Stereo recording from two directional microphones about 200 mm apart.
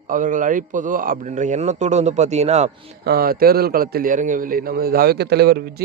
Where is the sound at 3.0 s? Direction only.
50° right (ahead or behind).